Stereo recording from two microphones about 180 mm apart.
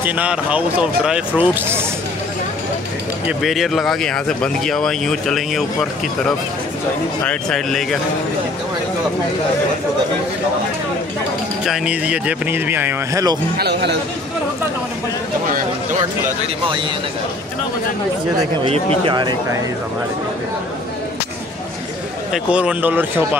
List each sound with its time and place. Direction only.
0.0 s speech: 10° right (ahead or behind)
3.3 s speech: centre (ahead or behind)
11.6 s speech: 5° right (ahead or behind); by 13.4 s 20° right (ahead or behind)
13.6 s speech: 70° right (ahead or behind)
15.4 s a sound: 45° right (ahead or behind)
18.7 s speech: 25° right (ahead or behind)
22.3 s speech: 5° right (ahead or behind)